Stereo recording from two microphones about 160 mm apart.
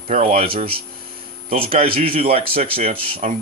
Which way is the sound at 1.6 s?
35° right (ahead or behind).